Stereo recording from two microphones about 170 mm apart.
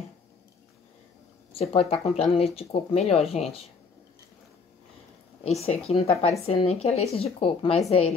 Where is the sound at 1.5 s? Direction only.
35° left (ahead or behind).